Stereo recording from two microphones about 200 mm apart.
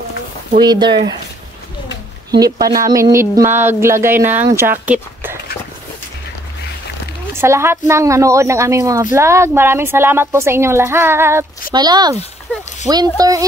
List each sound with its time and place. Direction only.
0.6 s speech: 20° right (ahead or behind)
2.3 s speech: 20° right (ahead or behind)
7.3 s speech: 15° right (ahead or behind)